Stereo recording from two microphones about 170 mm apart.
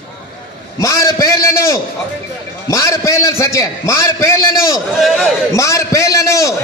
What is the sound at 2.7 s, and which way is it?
A man's voice, 20° left (ahead or behind).